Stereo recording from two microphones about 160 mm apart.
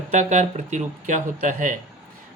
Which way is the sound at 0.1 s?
45° right (ahead or behind).